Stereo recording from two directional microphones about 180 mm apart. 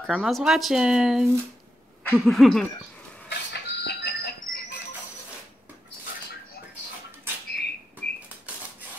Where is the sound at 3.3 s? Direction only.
70° left (ahead or behind).